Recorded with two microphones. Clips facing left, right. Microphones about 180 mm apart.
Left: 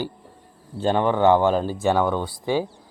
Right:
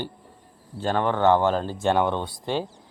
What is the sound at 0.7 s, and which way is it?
Speech, 20° left (ahead or behind).